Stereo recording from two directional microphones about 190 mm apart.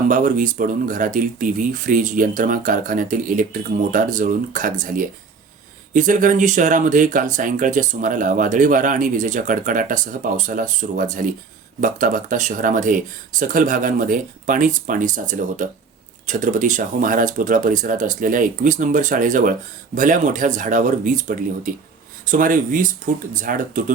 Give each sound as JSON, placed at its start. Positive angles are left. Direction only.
{"t": 0.1, "sound": "speech", "side_deg": -45}